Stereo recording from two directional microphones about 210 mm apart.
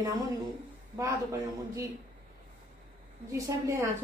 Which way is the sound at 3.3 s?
15° right (ahead or behind).